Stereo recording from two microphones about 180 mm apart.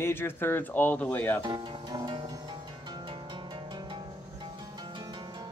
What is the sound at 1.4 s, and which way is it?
Music, 25° right (ahead or behind).